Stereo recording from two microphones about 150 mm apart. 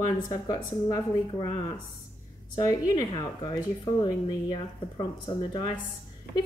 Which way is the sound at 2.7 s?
25° left (ahead or behind).